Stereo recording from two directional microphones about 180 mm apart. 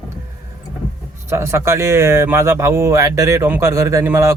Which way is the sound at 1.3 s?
15° right (ahead or behind).